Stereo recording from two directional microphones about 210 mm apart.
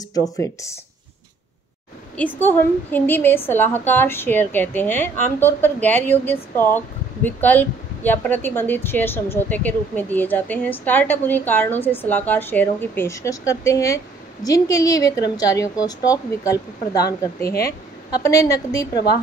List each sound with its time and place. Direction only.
0.1 s speech: 15° left (ahead or behind)
2.1 s speech: 10° left (ahead or behind)
18.1 s speech: 15° left (ahead or behind)